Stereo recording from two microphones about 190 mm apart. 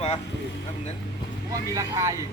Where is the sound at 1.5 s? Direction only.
15° right (ahead or behind).